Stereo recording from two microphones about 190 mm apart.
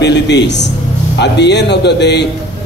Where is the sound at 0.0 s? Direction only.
65° left (ahead or behind).